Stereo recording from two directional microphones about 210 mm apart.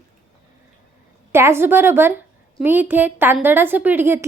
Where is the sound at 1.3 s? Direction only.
10° right (ahead or behind).